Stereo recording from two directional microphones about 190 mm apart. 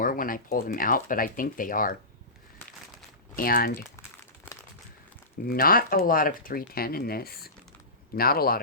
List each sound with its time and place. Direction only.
0.0 s speech: 45° left (ahead or behind)
3.3 s speech: 50° left (ahead or behind)
3.9 s crumpling: 15° left (ahead or behind)
5.5 s speech: 50° left (ahead or behind)